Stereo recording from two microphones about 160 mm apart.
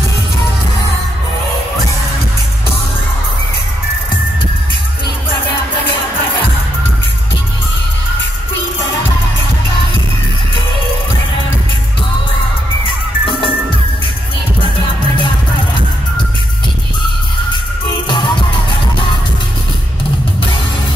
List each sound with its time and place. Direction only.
13.2 s music: 35° left (ahead or behind)
18.0 s music: 30° left (ahead or behind)